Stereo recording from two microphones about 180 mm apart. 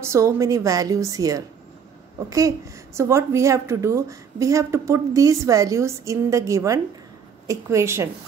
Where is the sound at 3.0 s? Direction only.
15° right (ahead or behind).